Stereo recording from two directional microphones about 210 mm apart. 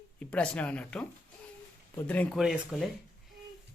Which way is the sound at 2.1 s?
5° left (ahead or behind).